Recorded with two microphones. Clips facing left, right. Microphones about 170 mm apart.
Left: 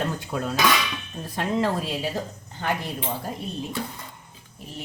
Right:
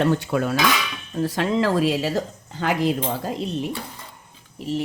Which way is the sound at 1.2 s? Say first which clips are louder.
Right 4 dB; 90° right.